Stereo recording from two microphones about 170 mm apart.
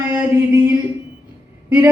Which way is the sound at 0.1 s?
15° right (ahead or behind).